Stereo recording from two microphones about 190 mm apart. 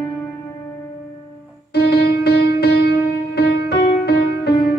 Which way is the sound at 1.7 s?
60° left (ahead or behind).